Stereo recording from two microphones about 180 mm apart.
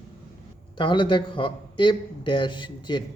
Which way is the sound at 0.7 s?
25° left (ahead or behind).